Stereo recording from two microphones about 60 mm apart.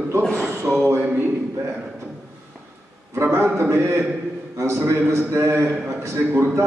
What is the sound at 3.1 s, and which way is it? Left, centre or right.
Speech, right.